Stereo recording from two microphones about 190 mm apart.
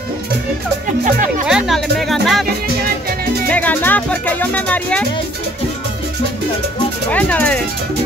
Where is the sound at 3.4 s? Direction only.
10° left (ahead or behind).